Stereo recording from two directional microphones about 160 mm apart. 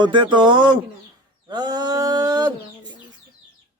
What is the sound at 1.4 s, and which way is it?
Speech, 25° right (ahead or behind).